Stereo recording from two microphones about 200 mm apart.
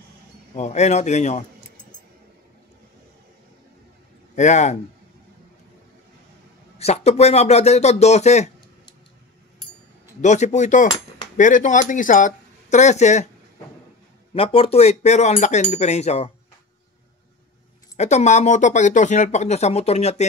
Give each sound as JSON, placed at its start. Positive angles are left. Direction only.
{"t": 0.6, "sound": "speech", "side_deg": 35}
{"t": 4.4, "sound": "speech", "side_deg": 35}
{"t": 6.8, "sound": "speech", "side_deg": 30}
{"t": 10.2, "sound": "speech", "side_deg": 35}
{"t": 14.3, "sound": "speech", "side_deg": 30}
{"t": 17.9, "sound": "speech", "side_deg": 35}